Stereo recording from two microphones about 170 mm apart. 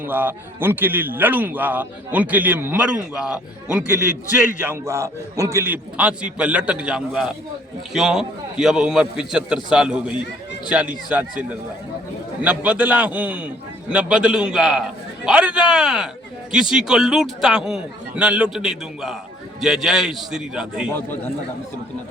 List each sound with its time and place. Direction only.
0.0 s a man's voice: 10° right (ahead or behind)